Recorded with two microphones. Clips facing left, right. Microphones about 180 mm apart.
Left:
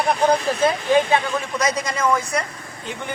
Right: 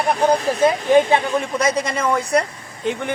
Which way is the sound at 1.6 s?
30° right (ahead or behind).